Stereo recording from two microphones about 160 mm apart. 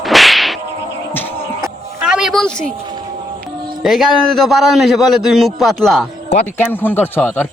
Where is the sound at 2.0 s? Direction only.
5° right (ahead or behind).